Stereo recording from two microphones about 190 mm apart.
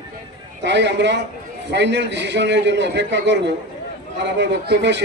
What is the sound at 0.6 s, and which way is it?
A man's voice, 65° right (ahead or behind).